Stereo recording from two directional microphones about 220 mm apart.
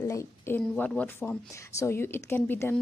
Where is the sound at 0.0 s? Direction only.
10° left (ahead or behind).